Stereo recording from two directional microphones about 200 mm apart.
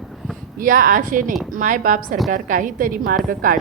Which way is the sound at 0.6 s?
40° right (ahead or behind).